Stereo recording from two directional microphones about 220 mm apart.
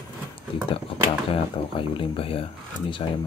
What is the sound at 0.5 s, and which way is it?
Speech, 25° left (ahead or behind).